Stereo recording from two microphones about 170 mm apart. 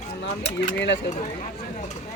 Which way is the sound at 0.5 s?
90° left.